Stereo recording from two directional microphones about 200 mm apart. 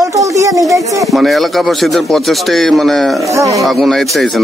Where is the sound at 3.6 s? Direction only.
Centre (ahead or behind).